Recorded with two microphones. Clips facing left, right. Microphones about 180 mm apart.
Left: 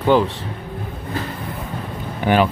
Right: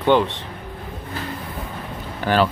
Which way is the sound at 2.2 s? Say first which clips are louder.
Left 2 dB; 15° left (ahead or behind).